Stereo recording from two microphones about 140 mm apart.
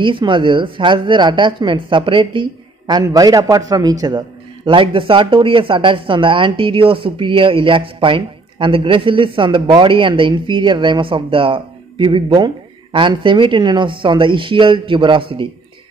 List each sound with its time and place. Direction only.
0.0 s a man's voice: 35° right (ahead or behind)